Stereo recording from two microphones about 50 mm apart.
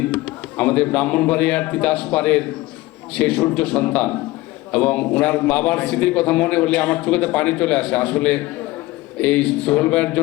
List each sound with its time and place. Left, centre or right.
0.0 s a man's voice: left